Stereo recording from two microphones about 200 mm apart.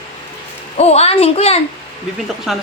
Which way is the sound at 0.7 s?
30° left (ahead or behind).